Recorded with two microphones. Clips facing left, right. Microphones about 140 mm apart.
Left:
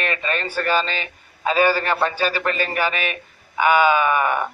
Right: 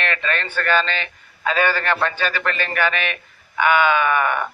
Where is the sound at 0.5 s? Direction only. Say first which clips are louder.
Right 1 dB; 10° left (ahead or behind).